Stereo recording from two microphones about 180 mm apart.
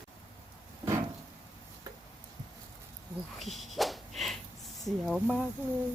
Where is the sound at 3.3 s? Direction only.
Centre (ahead or behind).